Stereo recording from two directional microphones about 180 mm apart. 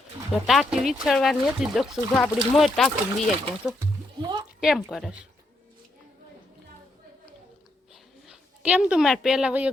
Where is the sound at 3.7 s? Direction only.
25° right (ahead or behind).